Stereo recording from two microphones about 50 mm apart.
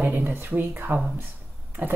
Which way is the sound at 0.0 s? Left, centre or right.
Right.